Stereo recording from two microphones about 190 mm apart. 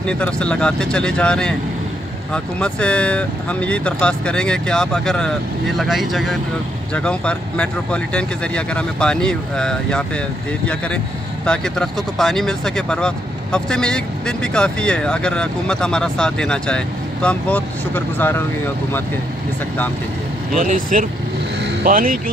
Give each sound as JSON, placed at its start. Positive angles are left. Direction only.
{"t": 0.0, "sound": "speech", "side_deg": 5}
{"t": 11.4, "sound": "speech", "side_deg": 5}
{"t": 20.5, "sound": "speech", "side_deg": -45}